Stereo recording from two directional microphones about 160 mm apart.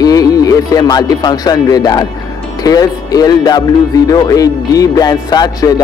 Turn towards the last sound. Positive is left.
turn(degrees=25)  # may be behind; listen again after turning